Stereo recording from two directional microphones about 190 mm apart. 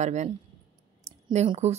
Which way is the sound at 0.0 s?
40° right (ahead or behind).